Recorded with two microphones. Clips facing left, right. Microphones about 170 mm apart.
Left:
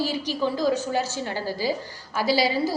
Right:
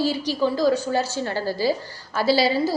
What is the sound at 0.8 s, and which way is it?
A woman's voice, 20° left (ahead or behind).